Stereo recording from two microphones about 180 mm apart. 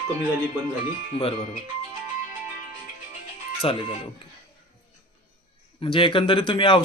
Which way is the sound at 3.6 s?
30° left (ahead or behind).